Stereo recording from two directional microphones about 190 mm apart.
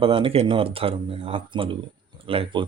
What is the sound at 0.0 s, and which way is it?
Speech, 30° right (ahead or behind).